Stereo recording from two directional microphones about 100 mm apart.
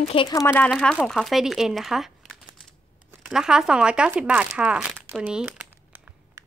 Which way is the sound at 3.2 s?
5° right (ahead or behind).